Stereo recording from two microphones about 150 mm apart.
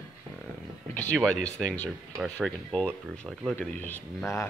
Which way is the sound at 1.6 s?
5° left (ahead or behind).